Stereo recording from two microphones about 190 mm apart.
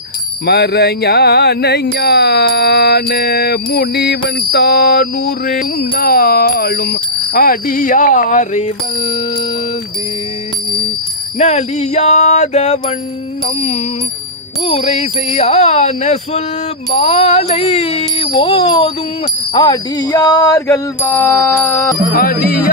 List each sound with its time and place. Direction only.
0.4 s music: 60° left (ahead or behind); by 9.2 s 30° left (ahead or behind)
11.3 s speech: 35° left (ahead or behind)
18.2 s a sound: 30° left (ahead or behind)
19.5 s bicycle bell: 20° left (ahead or behind)
22.1 s speech: 50° left (ahead or behind)